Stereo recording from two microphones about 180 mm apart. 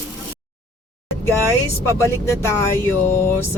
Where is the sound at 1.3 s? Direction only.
15° left (ahead or behind).